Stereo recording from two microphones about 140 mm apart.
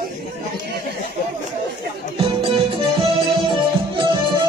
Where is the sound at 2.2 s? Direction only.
40° right (ahead or behind).